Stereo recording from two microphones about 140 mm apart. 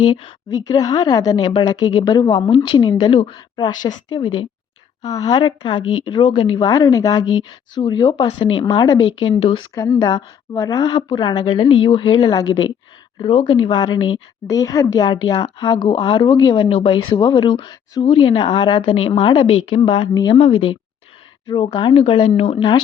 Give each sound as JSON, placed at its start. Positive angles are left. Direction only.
{"t": 0.1, "sound": "a woman's voice", "side_deg": 35}
{"t": 9.7, "sound": "a woman's voice", "side_deg": 20}
{"t": 12.3, "sound": "a woman's voice", "side_deg": 30}
{"t": 21.9, "sound": "speech", "side_deg": 45}
{"t": 22.5, "sound": "speech", "side_deg": 30}